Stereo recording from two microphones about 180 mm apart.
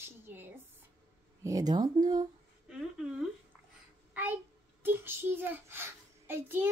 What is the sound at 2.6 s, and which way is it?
Speech, 5° right (ahead or behind).